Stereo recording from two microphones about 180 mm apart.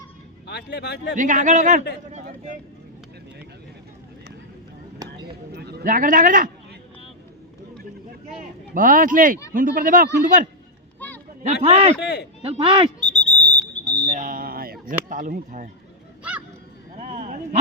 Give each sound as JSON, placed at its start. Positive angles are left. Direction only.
{"t": 0.4, "sound": "speech", "side_deg": 70}
{"t": 1.1, "sound": "a man's voice", "side_deg": -45}
{"t": 5.0, "sound": "a sound", "side_deg": -65}
{"t": 8.7, "sound": "a man's voice", "side_deg": -50}
{"t": 11.6, "sound": "speech", "side_deg": -35}
{"t": 13.0, "sound": "smoke detector", "side_deg": 40}
{"t": 13.8, "sound": "a sound", "side_deg": -15}
{"t": 14.1, "sound": "a sound", "side_deg": -45}
{"t": 17.0, "sound": "dog", "side_deg": -45}